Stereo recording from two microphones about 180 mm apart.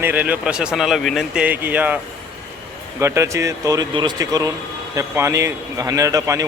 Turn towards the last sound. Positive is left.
turn(degrees=-20)  # may be behind; listen again after turning